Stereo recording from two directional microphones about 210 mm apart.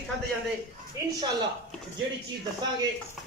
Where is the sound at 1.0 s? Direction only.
15° right (ahead or behind).